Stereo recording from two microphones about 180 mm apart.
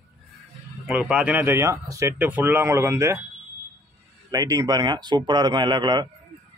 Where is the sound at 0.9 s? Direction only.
5° right (ahead or behind).